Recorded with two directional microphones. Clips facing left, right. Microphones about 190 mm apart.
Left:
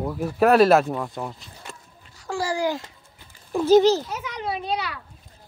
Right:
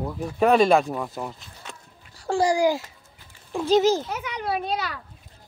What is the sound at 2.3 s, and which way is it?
Speech, 20° right (ahead or behind).